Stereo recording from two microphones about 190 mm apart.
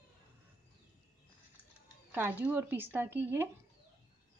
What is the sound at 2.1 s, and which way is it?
Speech, 10° right (ahead or behind).